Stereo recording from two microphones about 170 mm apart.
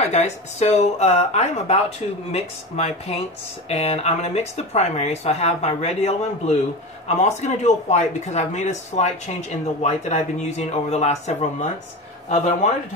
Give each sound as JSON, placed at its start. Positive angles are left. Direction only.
{"t": 0.1, "sound": "speech", "side_deg": 40}